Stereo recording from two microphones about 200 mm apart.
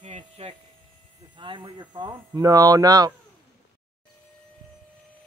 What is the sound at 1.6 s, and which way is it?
Speech, 20° right (ahead or behind).